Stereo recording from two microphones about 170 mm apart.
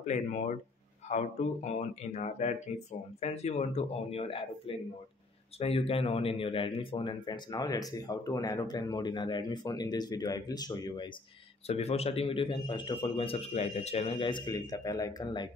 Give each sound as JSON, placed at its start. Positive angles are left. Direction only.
{"t": 0.0, "sound": "speech", "side_deg": 45}
{"t": 11.6, "sound": "speech", "side_deg": 40}